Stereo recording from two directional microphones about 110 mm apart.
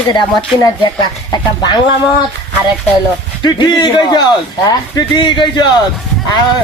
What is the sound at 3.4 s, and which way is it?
Speech, 40° left (ahead or behind).